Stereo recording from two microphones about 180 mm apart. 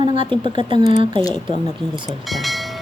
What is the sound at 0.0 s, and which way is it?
Speech, 30° right (ahead or behind).